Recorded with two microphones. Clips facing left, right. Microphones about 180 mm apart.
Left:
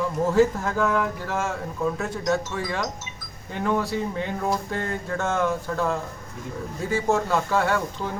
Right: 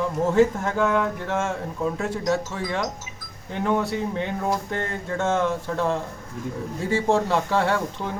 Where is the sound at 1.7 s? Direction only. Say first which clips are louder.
Left 1 dB; 15° right (ahead or behind).